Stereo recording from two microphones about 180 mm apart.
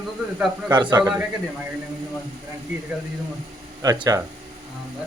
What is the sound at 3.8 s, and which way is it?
Speech, 20° right (ahead or behind).